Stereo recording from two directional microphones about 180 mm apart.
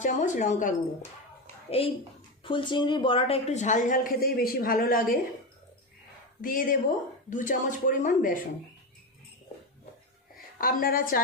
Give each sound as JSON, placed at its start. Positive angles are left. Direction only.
{"t": 0.0, "sound": "speech", "side_deg": 45}
{"t": 1.8, "sound": "speech", "side_deg": 30}
{"t": 6.4, "sound": "speech", "side_deg": 50}
{"t": 10.3, "sound": "a woman's voice", "side_deg": 50}